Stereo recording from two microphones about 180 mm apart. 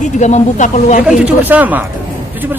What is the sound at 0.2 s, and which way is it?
Speech, 40° left (ahead or behind).